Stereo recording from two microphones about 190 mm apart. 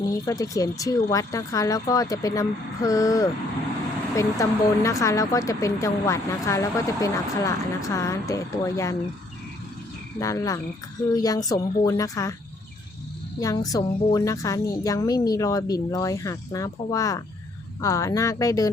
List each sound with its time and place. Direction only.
0.0 s speech: 20° left (ahead or behind)
10.2 s a woman's voice: 15° left (ahead or behind)
13.4 s speech: 20° left (ahead or behind)